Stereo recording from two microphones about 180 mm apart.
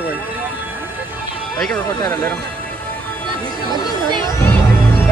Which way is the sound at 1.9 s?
20° left (ahead or behind).